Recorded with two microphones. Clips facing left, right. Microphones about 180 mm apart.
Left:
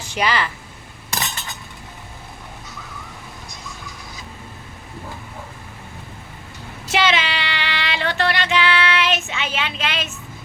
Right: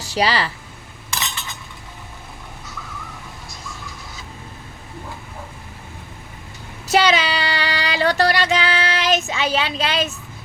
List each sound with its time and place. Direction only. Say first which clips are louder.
0.0 s speech: right 2 dB; 35° right (ahead or behind)
1.1 s cutlery: left 1 dB; 45° left (ahead or behind)
6.8 s female singing: right 3 dB; 40° right (ahead or behind)